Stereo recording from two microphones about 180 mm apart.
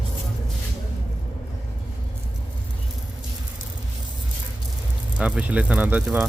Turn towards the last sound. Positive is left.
turn(degrees=-5)  # may be behind; listen again after turning